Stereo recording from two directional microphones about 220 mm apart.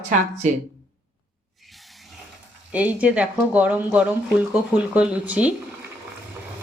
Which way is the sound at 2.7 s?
5° right (ahead or behind).